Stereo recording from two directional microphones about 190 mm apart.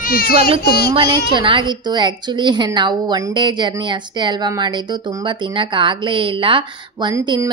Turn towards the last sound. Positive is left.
turn(degrees=-15)  # may be behind; listen again after turning